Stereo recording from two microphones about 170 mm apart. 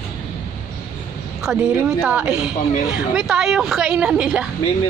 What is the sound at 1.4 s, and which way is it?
A woman's voice, 5° right (ahead or behind).